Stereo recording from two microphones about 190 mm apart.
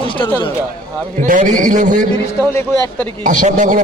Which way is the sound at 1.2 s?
45° right (ahead or behind).